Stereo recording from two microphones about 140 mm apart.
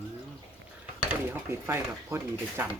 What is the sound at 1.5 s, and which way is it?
Speech, 20° right (ahead or behind).